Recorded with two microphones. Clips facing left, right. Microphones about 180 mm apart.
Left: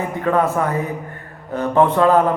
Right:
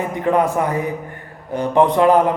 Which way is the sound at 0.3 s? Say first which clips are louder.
Right 1 dB; 15° right (ahead or behind).